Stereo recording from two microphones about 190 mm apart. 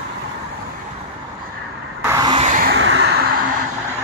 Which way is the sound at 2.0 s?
20° right (ahead or behind).